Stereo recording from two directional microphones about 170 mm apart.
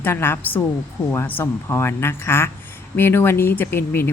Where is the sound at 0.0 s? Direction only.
15° left (ahead or behind).